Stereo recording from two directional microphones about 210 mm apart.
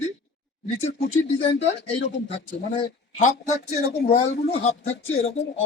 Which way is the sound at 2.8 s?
30° left (ahead or behind).